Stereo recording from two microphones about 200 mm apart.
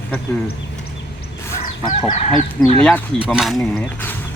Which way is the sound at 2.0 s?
30° left (ahead or behind).